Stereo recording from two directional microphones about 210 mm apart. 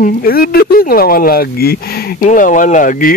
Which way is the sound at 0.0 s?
45° left (ahead or behind).